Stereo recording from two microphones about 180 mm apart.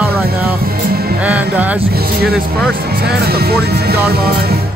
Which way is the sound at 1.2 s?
10° right (ahead or behind).